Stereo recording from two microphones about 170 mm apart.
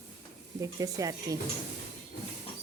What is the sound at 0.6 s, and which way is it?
Speech, 20° right (ahead or behind).